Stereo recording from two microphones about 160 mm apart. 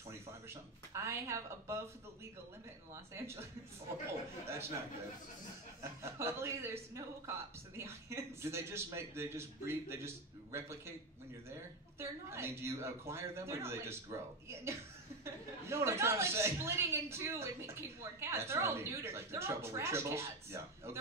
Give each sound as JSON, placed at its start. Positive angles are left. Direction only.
{"t": 0.1, "sound": "speech", "side_deg": -15}
{"t": 2.9, "sound": "speech", "side_deg": -15}
{"t": 5.8, "sound": "speech", "side_deg": -15}
{"t": 12.0, "sound": "speech", "side_deg": -15}